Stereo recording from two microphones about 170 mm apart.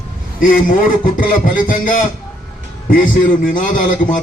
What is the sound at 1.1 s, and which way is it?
A man's voice, 50° left (ahead or behind).